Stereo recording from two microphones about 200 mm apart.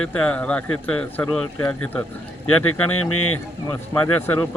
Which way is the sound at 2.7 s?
90° left.